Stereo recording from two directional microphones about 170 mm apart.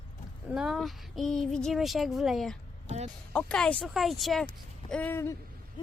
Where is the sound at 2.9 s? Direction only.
45° right (ahead or behind).